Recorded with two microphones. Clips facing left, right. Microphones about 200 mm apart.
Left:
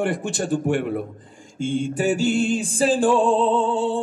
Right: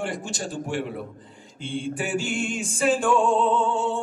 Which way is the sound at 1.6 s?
45° left (ahead or behind).